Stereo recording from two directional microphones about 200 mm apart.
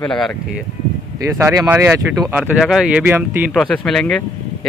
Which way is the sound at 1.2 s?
15° right (ahead or behind).